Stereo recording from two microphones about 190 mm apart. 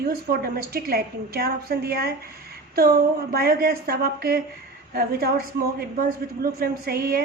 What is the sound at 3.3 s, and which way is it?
A woman's voice, 50° right (ahead or behind).